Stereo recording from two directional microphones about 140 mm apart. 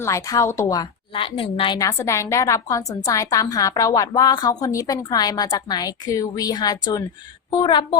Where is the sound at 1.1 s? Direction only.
40° left (ahead or behind).